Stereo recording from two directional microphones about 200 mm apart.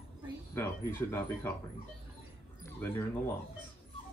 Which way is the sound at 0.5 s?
15° left (ahead or behind).